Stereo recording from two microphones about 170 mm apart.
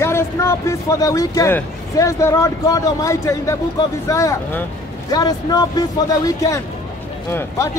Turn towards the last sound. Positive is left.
turn(degrees=15)  # may be behind; listen again after turning